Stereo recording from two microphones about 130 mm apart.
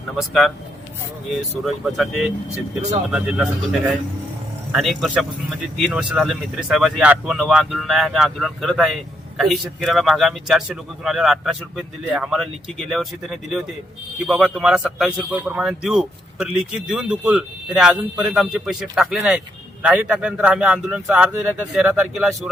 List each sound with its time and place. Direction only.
0.2 s speech: centre (ahead or behind)